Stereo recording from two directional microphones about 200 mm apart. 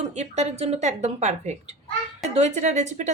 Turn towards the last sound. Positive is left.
turn(degrees=-35)  # may be behind; listen again after turning